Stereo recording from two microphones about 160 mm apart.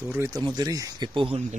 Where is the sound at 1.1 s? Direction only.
35° right (ahead or behind).